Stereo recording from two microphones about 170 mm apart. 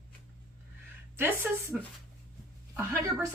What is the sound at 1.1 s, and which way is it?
Speech, 15° right (ahead or behind).